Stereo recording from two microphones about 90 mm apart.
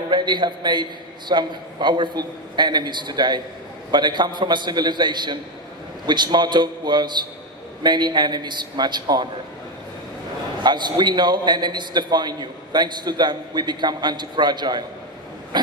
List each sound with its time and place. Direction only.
0.1 s a man's voice: 55° right (ahead or behind)
10.6 s a man's voice: 55° right (ahead or behind)